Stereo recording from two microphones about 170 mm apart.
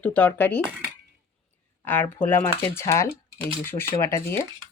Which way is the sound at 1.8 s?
10° left (ahead or behind).